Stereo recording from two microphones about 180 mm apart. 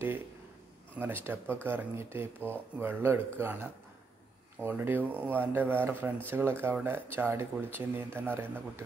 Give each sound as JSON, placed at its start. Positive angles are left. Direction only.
{"t": 0.9, "sound": "speech", "side_deg": -10}